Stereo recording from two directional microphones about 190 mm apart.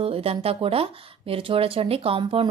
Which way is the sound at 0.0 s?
30° right (ahead or behind).